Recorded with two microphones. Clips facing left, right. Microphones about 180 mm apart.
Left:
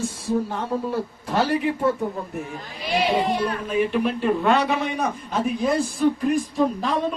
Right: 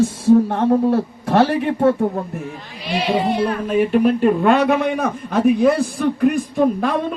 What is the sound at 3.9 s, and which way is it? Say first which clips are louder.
A man's voice: right 7 dB; 50° right (ahead or behind).